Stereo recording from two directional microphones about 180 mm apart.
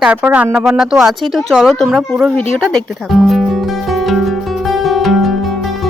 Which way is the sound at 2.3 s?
5° left (ahead or behind).